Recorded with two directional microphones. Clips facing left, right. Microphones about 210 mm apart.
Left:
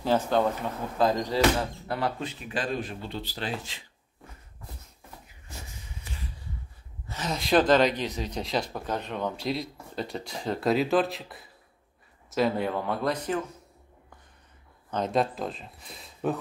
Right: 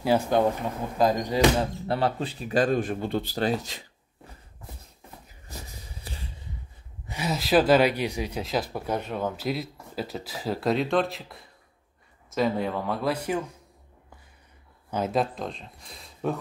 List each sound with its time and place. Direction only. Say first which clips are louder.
0.0 s speech: right 2 dB; 10° right (ahead or behind); by 3.8 s 40° right (ahead or behind)
5.5 s wheeze: right 2 dB; 35° right (ahead or behind)
7.1 s speech: right 1 dB; 10° right (ahead or behind)
14.9 s speech: even; 5° right (ahead or behind)